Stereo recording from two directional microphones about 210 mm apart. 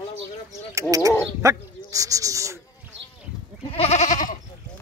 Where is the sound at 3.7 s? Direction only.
30° left (ahead or behind).